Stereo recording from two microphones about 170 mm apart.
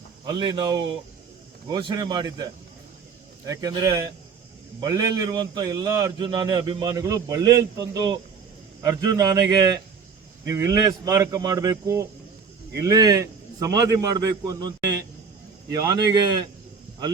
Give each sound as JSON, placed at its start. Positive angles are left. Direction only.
{"t": 0.3, "sound": "a man's voice", "side_deg": -25}